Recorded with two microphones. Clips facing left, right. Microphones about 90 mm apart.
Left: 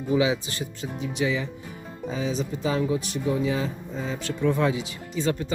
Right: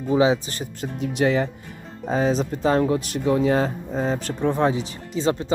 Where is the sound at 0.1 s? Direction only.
35° right (ahead or behind); by 2.3 s 55° right (ahead or behind).